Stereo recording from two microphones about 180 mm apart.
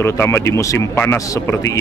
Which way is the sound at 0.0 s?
15° left (ahead or behind).